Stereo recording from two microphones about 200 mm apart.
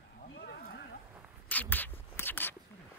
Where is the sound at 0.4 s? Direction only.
50° left (ahead or behind).